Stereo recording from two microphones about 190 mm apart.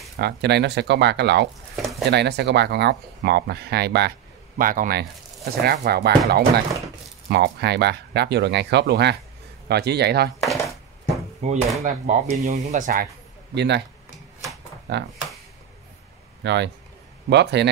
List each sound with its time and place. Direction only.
0.2 s speech: 60° right (ahead or behind)
1.8 s speech: centre (ahead or behind)
2.0 s speech: 60° right (ahead or behind)
4.6 s speech: 45° right (ahead or behind)
11.4 s speech: 35° right (ahead or behind)
13.6 s speech: 65° right (ahead or behind)
16.4 s speech: 65° right (ahead or behind)